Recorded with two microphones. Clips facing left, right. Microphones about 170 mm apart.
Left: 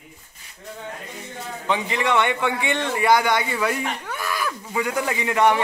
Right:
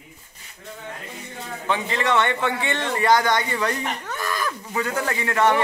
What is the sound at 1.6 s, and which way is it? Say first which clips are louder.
A man's voice: even; 15° left (ahead or behind).